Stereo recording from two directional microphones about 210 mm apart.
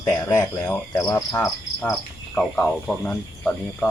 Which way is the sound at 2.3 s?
5° left (ahead or behind).